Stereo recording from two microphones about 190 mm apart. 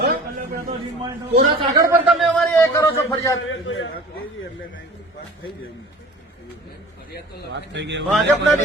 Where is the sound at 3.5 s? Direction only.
80° left.